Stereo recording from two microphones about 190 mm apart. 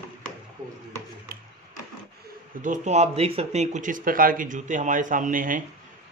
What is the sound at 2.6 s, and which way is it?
A man's voice, 40° right (ahead or behind).